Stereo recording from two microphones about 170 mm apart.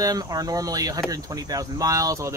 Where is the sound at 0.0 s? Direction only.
20° right (ahead or behind).